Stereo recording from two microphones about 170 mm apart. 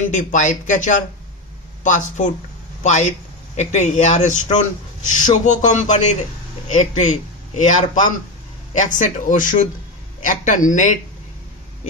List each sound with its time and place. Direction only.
0.0 s a man's voice: 45° left (ahead or behind)